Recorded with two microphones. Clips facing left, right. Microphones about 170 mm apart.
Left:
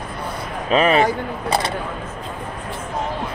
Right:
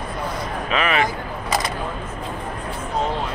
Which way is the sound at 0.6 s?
35° left (ahead or behind).